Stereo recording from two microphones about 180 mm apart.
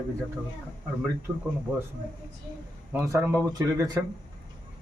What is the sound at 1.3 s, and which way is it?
Speech, 5° right (ahead or behind).